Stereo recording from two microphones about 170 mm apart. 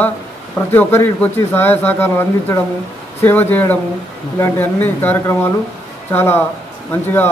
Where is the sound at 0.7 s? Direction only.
10° left (ahead or behind).